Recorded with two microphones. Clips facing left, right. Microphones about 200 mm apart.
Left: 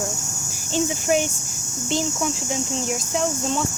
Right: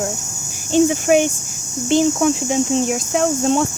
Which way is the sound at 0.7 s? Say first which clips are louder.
Right 8 dB; 60° right (ahead or behind).